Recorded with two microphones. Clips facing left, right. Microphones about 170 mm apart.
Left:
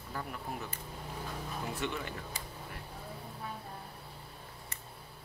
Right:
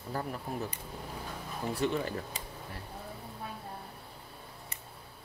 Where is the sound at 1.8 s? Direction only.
35° right (ahead or behind).